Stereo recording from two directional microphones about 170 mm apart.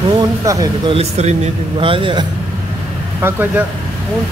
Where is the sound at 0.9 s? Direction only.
40° right (ahead or behind).